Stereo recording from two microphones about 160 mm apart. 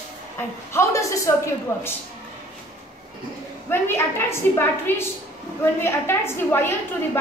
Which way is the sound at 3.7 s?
15° left (ahead or behind).